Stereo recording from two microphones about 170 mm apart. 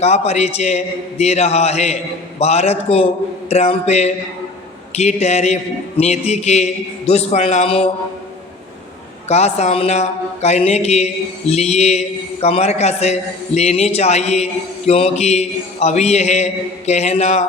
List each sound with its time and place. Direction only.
0.0 s speech: 40° left (ahead or behind)
9.3 s speech: 40° left (ahead or behind)